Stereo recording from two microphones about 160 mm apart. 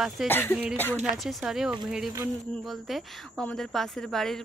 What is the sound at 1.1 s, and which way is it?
Speech, centre (ahead or behind).